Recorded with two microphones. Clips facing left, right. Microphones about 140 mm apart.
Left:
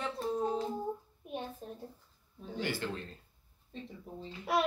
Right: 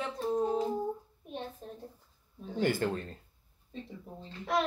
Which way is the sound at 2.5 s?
50° right (ahead or behind).